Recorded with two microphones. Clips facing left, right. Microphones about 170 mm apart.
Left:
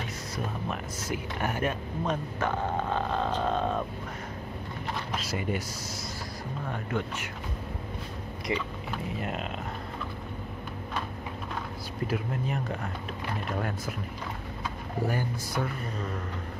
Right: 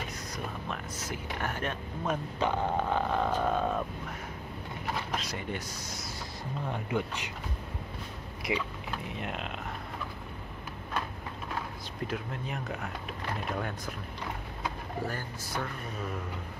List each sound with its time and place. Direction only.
0.7 s speech: 10° left (ahead or behind)
2.0 s speech: 15° right (ahead or behind)
4.8 s a sound: 5° left (ahead or behind)
6.7 s speech: 15° right (ahead or behind)
8.5 s speech: centre (ahead or behind)
12.1 s speech: centre (ahead or behind)
15.0 s speech: 10° left (ahead or behind)